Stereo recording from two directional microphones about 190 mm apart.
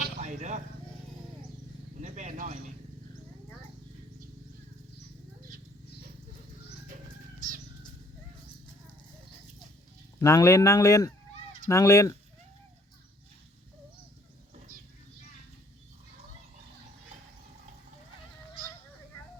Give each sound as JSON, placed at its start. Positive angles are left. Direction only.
{"t": 0.2, "sound": "speech", "side_deg": -40}
{"t": 2.0, "sound": "a sound", "side_deg": -40}
{"t": 7.3, "sound": "music", "side_deg": -45}
{"t": 10.2, "sound": "speech", "side_deg": 15}